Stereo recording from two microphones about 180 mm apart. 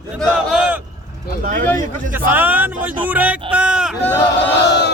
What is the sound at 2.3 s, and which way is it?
Speech, 10° right (ahead or behind).